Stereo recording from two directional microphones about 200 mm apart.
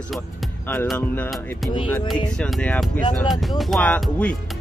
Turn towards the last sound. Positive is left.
turn(degrees=5)  # may be behind; listen again after turning